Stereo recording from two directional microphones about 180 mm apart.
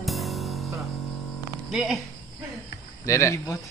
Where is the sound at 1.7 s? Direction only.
Centre (ahead or behind).